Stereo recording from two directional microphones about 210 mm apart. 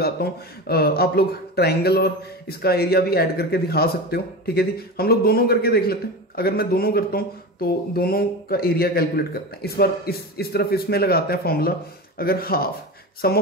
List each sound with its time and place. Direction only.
0.0 s speech: 45° left (ahead or behind)